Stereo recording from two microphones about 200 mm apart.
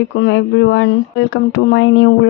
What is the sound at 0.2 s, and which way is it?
Speech, 65° left (ahead or behind).